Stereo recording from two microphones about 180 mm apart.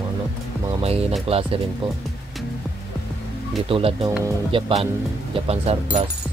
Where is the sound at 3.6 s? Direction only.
30° right (ahead or behind).